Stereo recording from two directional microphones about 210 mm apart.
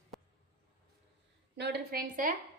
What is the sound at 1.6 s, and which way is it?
Speech, 50° right (ahead or behind).